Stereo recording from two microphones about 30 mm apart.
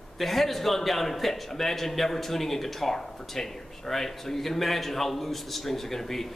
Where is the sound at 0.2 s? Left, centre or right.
Centre.